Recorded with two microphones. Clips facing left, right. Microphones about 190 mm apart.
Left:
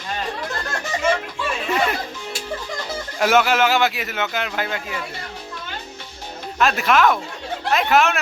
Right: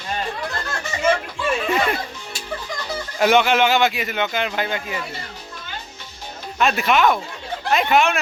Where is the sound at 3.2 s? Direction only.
5° left (ahead or behind).